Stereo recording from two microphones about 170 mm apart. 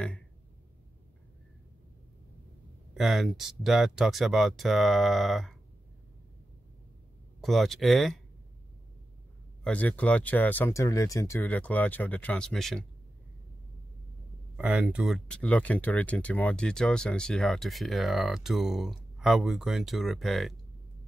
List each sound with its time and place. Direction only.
2.9 s speech: centre (ahead or behind)
7.4 s speech: centre (ahead or behind)
9.6 s speech: 10° left (ahead or behind)
14.6 s speech: 5° right (ahead or behind)